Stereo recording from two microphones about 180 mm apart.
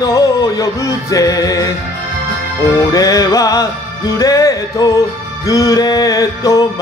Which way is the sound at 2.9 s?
20° left (ahead or behind).